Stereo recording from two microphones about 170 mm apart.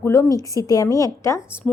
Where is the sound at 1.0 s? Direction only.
15° left (ahead or behind).